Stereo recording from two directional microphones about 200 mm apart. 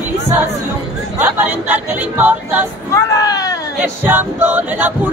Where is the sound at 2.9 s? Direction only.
15° left (ahead or behind).